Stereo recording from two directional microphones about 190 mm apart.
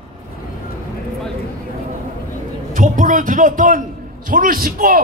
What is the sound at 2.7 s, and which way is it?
A man's voice, 45° right (ahead or behind).